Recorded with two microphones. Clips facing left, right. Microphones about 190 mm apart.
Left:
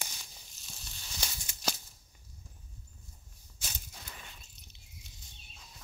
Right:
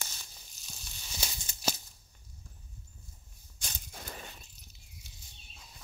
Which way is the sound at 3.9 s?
50° right (ahead or behind).